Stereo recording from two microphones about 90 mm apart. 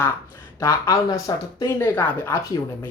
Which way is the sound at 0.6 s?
40° left (ahead or behind).